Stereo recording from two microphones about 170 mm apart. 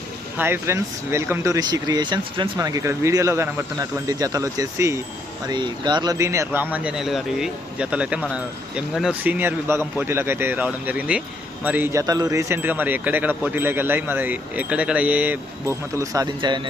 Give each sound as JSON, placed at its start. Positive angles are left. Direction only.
{"t": 0.3, "sound": "speech", "side_deg": -15}